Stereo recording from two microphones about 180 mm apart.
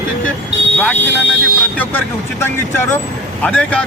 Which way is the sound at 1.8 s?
10° left (ahead or behind).